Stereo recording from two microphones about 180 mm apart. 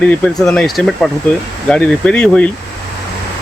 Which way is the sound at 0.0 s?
5° left (ahead or behind).